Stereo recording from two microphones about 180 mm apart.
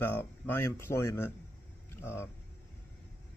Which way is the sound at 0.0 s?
10° left (ahead or behind).